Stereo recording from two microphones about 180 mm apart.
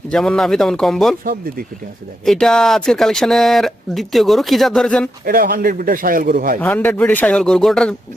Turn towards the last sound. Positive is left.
turn(degrees=5)  # may be behind; listen again after turning